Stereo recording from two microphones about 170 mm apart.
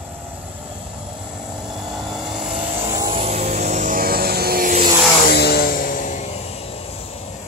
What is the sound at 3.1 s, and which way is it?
Vehicle, 40° right (ahead or behind).